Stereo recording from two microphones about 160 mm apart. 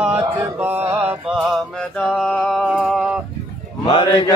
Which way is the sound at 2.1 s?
Centre (ahead or behind).